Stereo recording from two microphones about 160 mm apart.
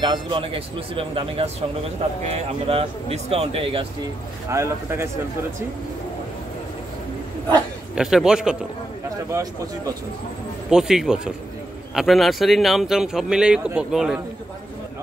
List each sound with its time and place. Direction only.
0.0 s speech: 30° right (ahead or behind)
4.5 s speech: 15° right (ahead or behind)
7.9 s speech: 5° right (ahead or behind)
9.3 s speech: 20° right (ahead or behind)
10.7 s speech: 5° right (ahead or behind)